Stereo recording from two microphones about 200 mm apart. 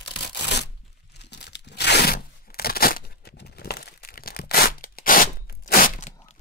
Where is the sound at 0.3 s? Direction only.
55° left (ahead or behind).